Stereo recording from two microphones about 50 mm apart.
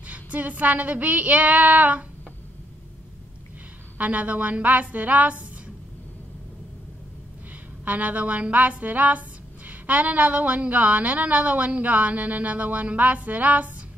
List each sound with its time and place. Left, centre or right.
0.0 s a woman's voice: right
4.0 s a woman's voice: right
7.8 s a woman's voice: right